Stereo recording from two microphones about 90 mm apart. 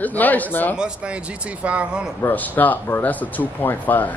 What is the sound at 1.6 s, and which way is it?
Speech, 15° right (ahead or behind).